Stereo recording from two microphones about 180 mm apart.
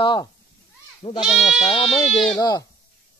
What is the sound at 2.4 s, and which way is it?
Speech, 25° left (ahead or behind).